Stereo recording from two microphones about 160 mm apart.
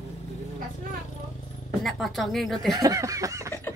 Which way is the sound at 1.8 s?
Centre (ahead or behind).